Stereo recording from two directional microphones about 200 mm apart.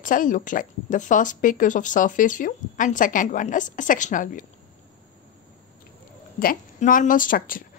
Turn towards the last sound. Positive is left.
turn(degrees=45)  # may be behind; listen again after turning